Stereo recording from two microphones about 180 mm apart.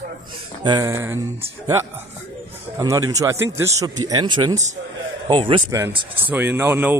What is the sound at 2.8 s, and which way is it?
Speech, 20° right (ahead or behind).